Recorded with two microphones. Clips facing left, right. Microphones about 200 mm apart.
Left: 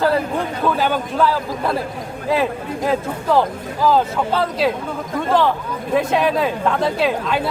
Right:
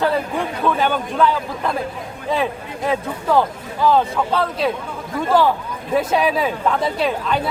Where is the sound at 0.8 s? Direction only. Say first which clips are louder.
Right 1 dB; 5° left (ahead or behind).